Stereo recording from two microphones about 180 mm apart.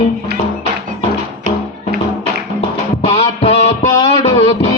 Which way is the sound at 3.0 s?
35° left (ahead or behind).